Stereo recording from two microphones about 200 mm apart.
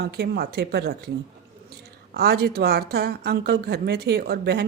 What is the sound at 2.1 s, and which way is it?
Speech, 55° right (ahead or behind).